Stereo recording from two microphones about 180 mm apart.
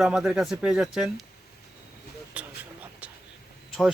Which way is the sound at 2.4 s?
5° right (ahead or behind).